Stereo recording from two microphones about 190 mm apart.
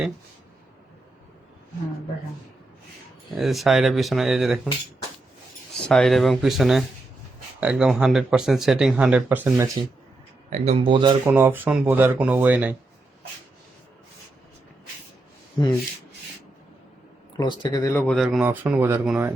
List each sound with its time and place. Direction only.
3.3 s speech: centre (ahead or behind)
5.7 s speech: centre (ahead or behind)
10.5 s speech: 30° right (ahead or behind)
11.3 s speech: 10° right (ahead or behind)
17.3 s speech: 25° left (ahead or behind)
17.9 s speech: 5° left (ahead or behind)